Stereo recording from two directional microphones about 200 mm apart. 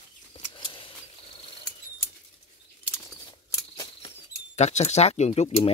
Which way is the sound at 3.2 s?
20° left (ahead or behind).